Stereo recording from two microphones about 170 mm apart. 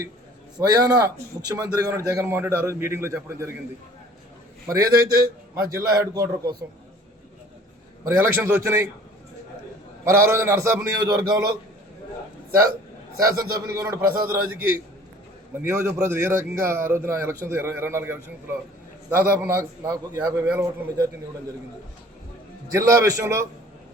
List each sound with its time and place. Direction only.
0.7 s a man's voice: 20° right (ahead or behind)
5.5 s a man's voice: 20° right (ahead or behind)
8.0 s a man's voice: 15° right (ahead or behind)
10.1 s a man's voice: 15° right (ahead or behind)
13.1 s a man's voice: 20° right (ahead or behind)
22.7 s a man's voice: 20° right (ahead or behind)